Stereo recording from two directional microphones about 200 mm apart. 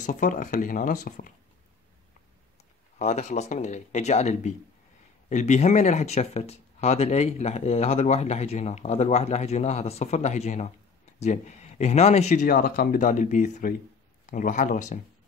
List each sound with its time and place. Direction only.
0.0 s speech: 40° left (ahead or behind)
3.0 s speech: 35° left (ahead or behind)